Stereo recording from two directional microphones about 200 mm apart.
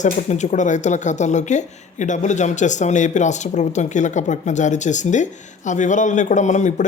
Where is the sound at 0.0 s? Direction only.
35° left (ahead or behind).